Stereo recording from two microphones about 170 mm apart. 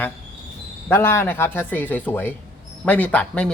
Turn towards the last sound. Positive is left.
turn(degrees=5)  # may be behind; listen again after turning